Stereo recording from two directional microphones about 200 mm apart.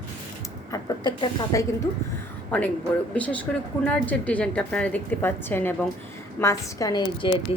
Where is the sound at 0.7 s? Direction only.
20° left (ahead or behind).